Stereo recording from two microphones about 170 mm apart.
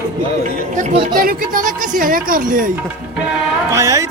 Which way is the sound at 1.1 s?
55° right (ahead or behind).